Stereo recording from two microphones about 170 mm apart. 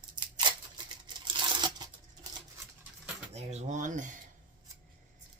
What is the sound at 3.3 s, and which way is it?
Speech, 40° right (ahead or behind).